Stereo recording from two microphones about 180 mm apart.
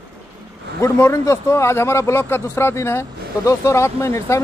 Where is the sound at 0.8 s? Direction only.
15° left (ahead or behind).